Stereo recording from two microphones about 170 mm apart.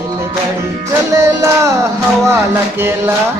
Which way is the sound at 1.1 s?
15° right (ahead or behind).